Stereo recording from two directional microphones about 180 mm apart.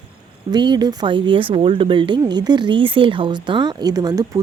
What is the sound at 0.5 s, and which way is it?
Speech, 25° right (ahead or behind).